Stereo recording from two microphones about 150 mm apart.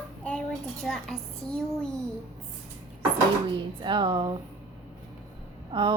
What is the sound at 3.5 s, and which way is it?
Speech, 35° right (ahead or behind).